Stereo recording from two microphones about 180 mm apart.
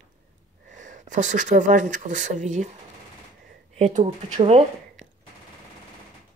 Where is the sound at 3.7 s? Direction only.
40° right (ahead or behind).